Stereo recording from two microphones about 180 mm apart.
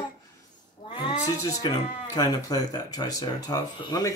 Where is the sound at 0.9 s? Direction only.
25° left (ahead or behind).